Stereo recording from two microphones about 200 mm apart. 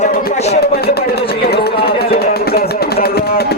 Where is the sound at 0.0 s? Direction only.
35° left (ahead or behind).